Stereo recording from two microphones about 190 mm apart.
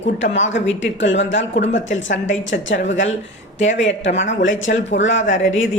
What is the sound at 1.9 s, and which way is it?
Speech, 80° left.